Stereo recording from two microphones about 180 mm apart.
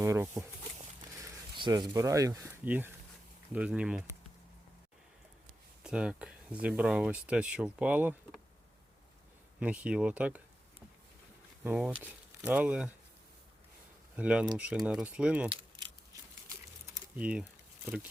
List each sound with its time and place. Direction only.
0.0 s a sound: 15° right (ahead or behind)
1.2 s speech: 25° right (ahead or behind); by 4.0 s 5° right (ahead or behind)
5.8 s speech: 5° right (ahead or behind)
9.6 s speech: 5° right (ahead or behind)
11.6 s speech: 10° right (ahead or behind)
14.2 s speech: 5° right (ahead or behind)
15.4 s keys jangling: 25° right (ahead or behind)
17.2 s speech: 5° right (ahead or behind)